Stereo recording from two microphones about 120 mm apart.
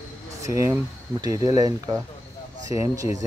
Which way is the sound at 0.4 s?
25° right (ahead or behind).